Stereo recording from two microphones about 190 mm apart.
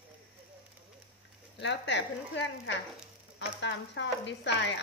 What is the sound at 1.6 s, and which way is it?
Speech, 70° left (ahead or behind).